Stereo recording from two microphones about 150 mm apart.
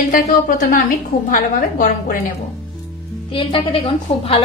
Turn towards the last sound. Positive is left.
turn(degrees=35)  # may be behind; listen again after turning